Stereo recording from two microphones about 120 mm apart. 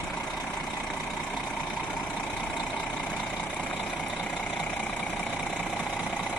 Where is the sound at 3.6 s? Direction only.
10° left (ahead or behind).